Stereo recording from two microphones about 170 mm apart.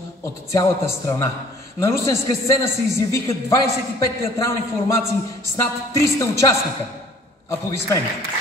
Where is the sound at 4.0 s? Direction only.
15° left (ahead or behind).